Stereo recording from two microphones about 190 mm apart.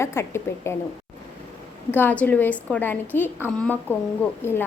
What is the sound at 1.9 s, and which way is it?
A woman's voice, 10° left (ahead or behind).